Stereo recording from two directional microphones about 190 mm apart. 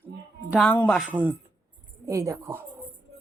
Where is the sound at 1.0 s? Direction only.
10° right (ahead or behind).